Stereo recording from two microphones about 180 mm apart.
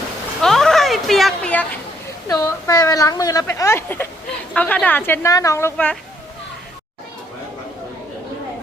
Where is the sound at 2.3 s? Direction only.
15° left (ahead or behind).